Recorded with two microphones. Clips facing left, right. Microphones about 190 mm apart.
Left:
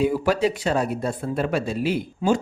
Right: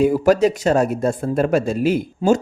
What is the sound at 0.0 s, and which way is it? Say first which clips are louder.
Speech: right 6 dB; 45° right (ahead or behind).